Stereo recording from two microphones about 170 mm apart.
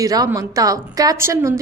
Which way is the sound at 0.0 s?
20° right (ahead or behind).